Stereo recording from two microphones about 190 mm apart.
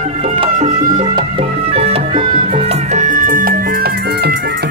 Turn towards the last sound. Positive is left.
turn(degrees=-45)  # may be behind; listen again after turning